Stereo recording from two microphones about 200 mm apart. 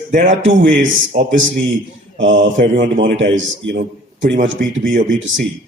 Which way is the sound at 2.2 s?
40° right (ahead or behind).